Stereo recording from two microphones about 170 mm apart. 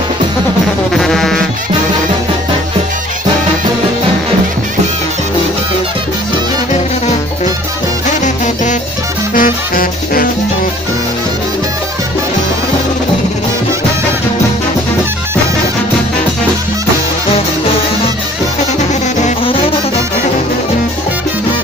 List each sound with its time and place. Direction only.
0.9 s music: centre (ahead or behind)
9.3 s music: 55° left (ahead or behind)
19.4 s music: 30° left (ahead or behind)